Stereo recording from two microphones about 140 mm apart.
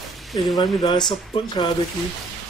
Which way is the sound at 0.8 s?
30° left (ahead or behind).